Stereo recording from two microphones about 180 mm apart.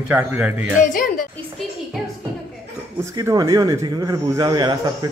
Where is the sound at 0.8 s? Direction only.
50° left (ahead or behind).